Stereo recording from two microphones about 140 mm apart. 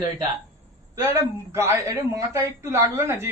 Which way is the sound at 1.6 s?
20° right (ahead or behind).